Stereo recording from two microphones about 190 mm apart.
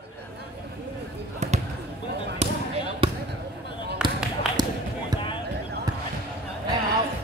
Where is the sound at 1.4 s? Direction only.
35° right (ahead or behind).